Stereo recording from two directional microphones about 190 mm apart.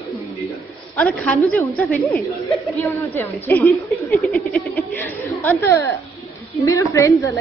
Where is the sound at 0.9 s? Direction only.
5° left (ahead or behind).